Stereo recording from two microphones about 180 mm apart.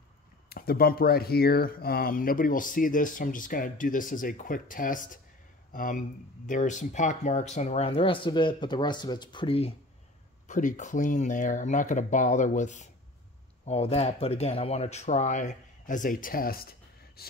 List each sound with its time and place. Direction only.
0.5 s speech: 55° left (ahead or behind); by 9.8 s 30° left (ahead or behind)
10.5 s speech: 45° left (ahead or behind)